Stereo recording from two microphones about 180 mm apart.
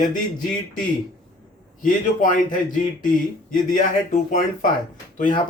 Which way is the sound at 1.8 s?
45° left (ahead or behind).